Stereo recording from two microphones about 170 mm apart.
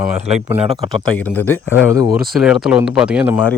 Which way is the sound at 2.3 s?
Centre (ahead or behind).